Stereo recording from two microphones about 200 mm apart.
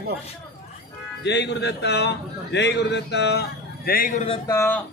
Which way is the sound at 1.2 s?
60° left (ahead or behind).